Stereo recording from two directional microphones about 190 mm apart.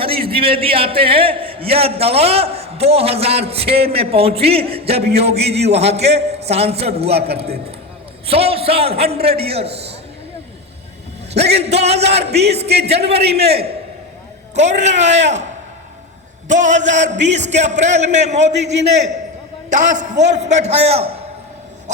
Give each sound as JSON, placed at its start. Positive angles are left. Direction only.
{"t": 0.0, "sound": "a man's voice", "side_deg": -30}
{"t": 11.3, "sound": "a man's voice", "side_deg": -35}
{"t": 16.5, "sound": "a man's voice", "side_deg": -40}
{"t": 19.7, "sound": "a man's voice", "side_deg": -40}